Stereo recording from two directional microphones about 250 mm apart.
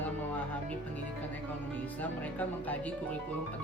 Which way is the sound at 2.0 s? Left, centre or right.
Centre.